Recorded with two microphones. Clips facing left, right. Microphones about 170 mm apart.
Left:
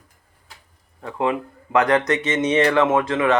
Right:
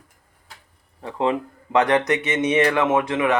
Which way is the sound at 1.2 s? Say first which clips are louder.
Even; 25° right (ahead or behind).